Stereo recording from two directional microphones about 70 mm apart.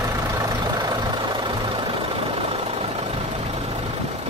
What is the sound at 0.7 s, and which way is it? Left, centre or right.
Vehicle, right.